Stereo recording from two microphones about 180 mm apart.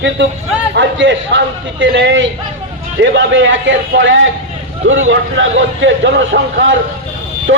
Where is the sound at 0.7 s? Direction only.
85° right.